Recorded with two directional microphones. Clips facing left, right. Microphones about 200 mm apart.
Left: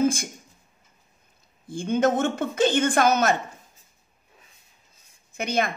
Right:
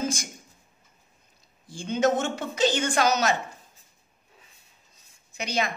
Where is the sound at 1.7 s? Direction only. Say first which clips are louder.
Left 2 dB; 55° left (ahead or behind).